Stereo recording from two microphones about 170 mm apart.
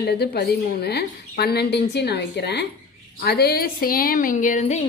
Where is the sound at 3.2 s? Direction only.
65° left (ahead or behind); by 4.8 s 40° left (ahead or behind).